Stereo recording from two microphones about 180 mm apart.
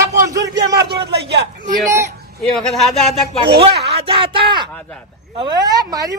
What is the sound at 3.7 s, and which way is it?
Speech, 65° right (ahead or behind).